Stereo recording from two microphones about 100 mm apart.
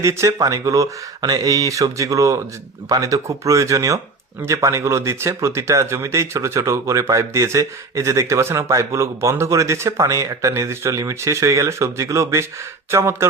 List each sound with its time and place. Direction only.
0.0 s speech: 30° right (ahead or behind)